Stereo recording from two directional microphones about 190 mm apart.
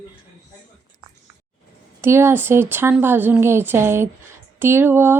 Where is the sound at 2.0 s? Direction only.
15° right (ahead or behind).